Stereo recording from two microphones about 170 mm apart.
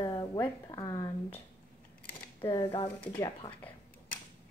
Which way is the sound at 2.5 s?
35° left (ahead or behind).